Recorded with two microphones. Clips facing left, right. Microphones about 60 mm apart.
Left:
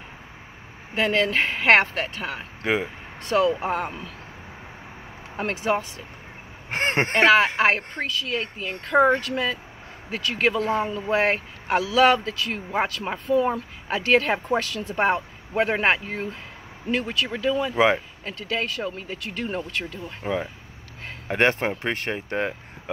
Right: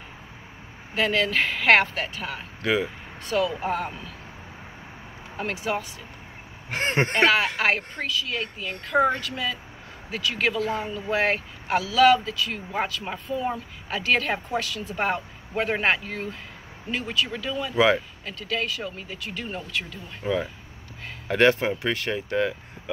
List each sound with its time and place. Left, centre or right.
0.9 s speech: left
2.6 s speech: left
3.2 s a woman's voice: left
3.6 s speech: left
5.4 s a woman's voice: left
6.7 s speech: left
10.1 s a woman's voice: left
15.0 s speech: left
16.9 s speech: left